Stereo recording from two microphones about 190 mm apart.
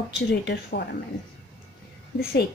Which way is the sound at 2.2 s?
60° left (ahead or behind).